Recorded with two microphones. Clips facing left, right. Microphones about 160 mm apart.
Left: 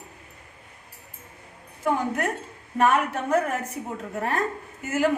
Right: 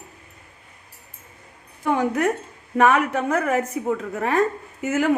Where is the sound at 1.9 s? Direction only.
90° right.